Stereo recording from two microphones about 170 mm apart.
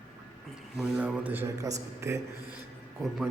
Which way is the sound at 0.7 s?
5° right (ahead or behind).